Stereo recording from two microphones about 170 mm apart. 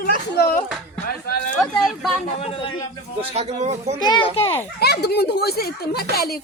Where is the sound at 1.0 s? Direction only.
65° left (ahead or behind).